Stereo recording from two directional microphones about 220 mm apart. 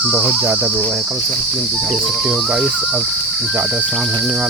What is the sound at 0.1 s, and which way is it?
Cricket, 5° right (ahead or behind).